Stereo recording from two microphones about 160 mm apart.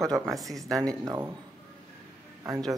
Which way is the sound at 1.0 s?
15° right (ahead or behind).